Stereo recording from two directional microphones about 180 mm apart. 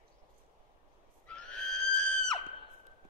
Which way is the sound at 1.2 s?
5° left (ahead or behind).